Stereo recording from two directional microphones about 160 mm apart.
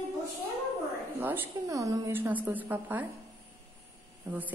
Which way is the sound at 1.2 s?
15° right (ahead or behind).